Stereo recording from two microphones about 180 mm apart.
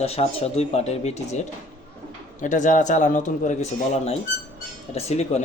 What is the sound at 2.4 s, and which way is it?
A man's voice, 45° left (ahead or behind).